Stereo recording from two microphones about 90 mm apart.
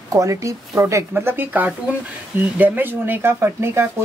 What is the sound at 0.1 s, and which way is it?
A woman's voice, 35° right (ahead or behind).